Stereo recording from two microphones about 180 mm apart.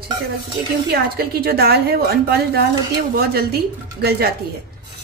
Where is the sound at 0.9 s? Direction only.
60° right (ahead or behind).